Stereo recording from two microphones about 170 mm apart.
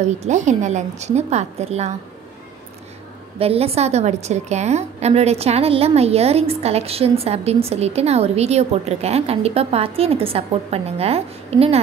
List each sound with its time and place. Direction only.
0.0 s a woman's voice: 45° right (ahead or behind)
3.3 s a woman's voice: 35° right (ahead or behind)